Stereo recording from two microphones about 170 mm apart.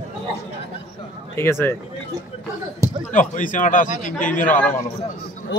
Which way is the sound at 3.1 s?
50° left (ahead or behind).